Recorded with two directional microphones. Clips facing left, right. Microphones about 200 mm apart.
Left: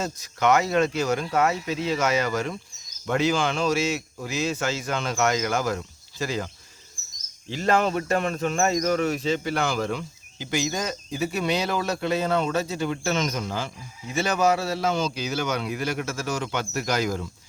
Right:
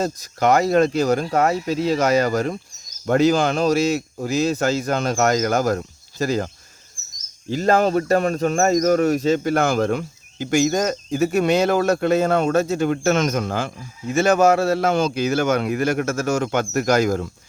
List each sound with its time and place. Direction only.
0.0 s speech: 40° right (ahead or behind)
7.5 s speech: 40° right (ahead or behind)